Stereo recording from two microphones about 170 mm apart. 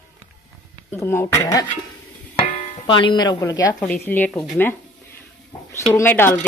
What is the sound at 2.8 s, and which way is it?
Speech, 30° left (ahead or behind).